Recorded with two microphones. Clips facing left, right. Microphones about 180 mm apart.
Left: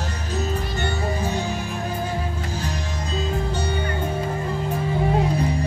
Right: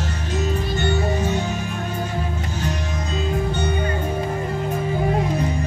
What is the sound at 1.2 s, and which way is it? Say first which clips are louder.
Music: right 3 dB; 35° left (ahead or behind).